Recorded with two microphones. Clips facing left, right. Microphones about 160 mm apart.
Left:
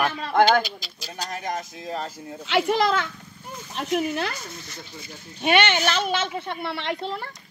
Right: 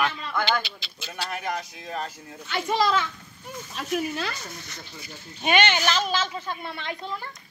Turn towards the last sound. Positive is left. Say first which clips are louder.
# left 4 dB
turn(degrees=70)  # may be behind; listen again after turning